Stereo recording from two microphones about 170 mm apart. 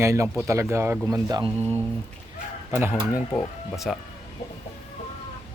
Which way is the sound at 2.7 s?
15° right (ahead or behind).